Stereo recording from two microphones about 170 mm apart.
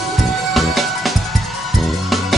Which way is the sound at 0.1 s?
Centre (ahead or behind).